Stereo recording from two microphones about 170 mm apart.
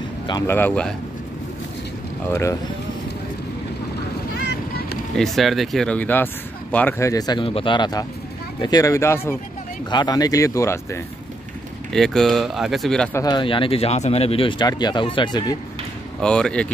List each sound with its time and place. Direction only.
0.3 s speech: 15° left (ahead or behind)
2.3 s speech: 20° left (ahead or behind)
5.1 s speech: centre (ahead or behind); by 11.0 s 15° left (ahead or behind)
11.9 s speech: centre (ahead or behind)
13.1 s speech: 25° left (ahead or behind)
16.2 s speech: 5° left (ahead or behind)